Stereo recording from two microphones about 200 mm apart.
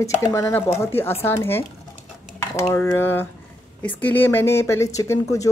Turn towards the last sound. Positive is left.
turn(degrees=15)  # may be behind; listen again after turning